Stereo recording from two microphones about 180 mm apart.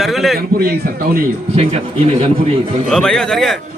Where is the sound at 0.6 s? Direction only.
55° right (ahead or behind).